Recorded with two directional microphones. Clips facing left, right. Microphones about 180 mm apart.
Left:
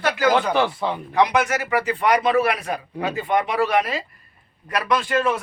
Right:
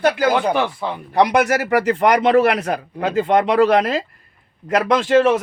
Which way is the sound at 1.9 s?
75° right (ahead or behind).